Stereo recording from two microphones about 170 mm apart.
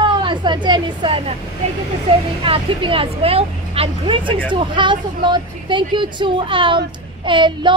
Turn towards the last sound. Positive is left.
turn(degrees=-30)  # may be behind; listen again after turning